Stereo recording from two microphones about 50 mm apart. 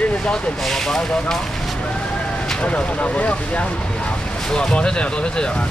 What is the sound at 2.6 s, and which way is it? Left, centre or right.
Speech, left.